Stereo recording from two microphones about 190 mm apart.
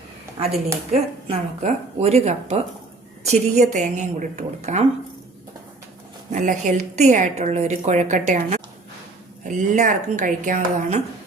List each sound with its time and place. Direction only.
0.9 s a woman's voice: 35° right (ahead or behind)
6.3 s a woman's voice: 40° right (ahead or behind)